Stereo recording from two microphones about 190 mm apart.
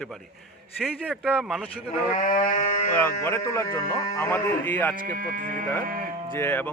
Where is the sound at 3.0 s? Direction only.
10° left (ahead or behind).